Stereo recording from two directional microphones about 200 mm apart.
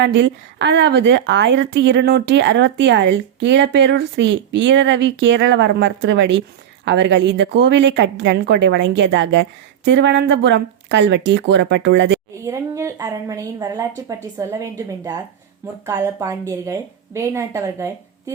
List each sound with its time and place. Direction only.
0.0 s a woman's voice: 60° right (ahead or behind)
12.4 s a woman's voice: 15° right (ahead or behind)